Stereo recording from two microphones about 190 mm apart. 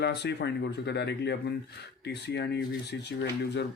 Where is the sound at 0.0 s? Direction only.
60° left (ahead or behind).